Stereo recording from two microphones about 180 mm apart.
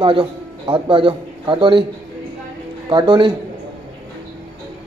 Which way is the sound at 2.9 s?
25° right (ahead or behind).